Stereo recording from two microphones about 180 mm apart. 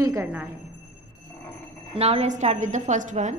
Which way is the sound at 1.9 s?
35° right (ahead or behind).